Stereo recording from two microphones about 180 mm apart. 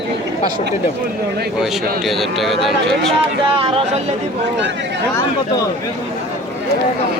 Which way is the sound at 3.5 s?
30° right (ahead or behind).